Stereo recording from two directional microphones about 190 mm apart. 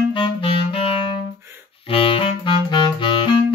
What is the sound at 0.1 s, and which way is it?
Clarinet, 25° left (ahead or behind).